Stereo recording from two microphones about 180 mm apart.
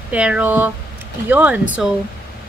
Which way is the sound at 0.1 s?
5° right (ahead or behind).